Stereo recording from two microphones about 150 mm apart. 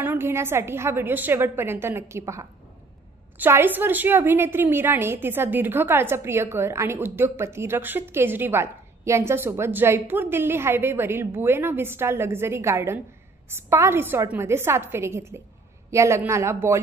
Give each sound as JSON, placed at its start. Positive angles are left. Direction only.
{"t": 0.0, "sound": "a woman's voice", "side_deg": -15}